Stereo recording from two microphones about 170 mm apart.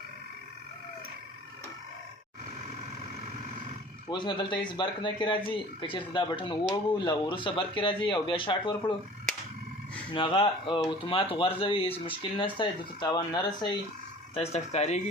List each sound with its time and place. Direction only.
4.1 s speech: 25° left (ahead or behind)
10.1 s speech: 30° left (ahead or behind)
14.3 s speech: 40° left (ahead or behind)